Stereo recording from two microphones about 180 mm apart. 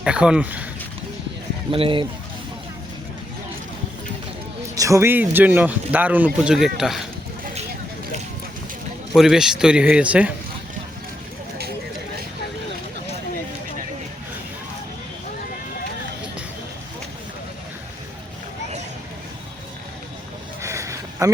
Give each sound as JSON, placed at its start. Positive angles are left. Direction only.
{"t": 0.0, "sound": "speech", "side_deg": -5}
{"t": 1.7, "sound": "speech", "side_deg": -30}
{"t": 4.7, "sound": "speech", "side_deg": -20}
{"t": 9.1, "sound": "speech", "side_deg": -5}
{"t": 20.6, "sound": "a sound", "side_deg": -15}